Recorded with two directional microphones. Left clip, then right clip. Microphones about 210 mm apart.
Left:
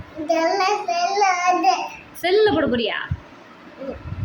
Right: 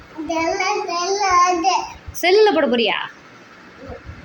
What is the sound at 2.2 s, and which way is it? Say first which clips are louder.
Speech: right 3 dB; centre (ahead or behind).